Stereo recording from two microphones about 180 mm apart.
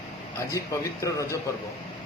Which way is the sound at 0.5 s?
15° left (ahead or behind).